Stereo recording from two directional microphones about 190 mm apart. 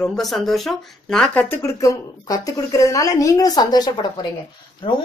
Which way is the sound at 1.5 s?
15° left (ahead or behind).